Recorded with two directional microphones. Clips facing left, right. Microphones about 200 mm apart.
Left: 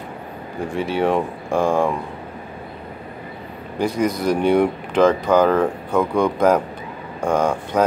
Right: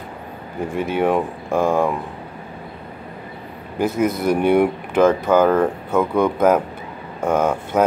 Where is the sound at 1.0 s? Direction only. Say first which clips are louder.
Right 1 dB; 5° right (ahead or behind).